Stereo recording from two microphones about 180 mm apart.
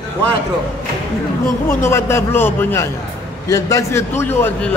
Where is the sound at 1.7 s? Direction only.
15° left (ahead or behind).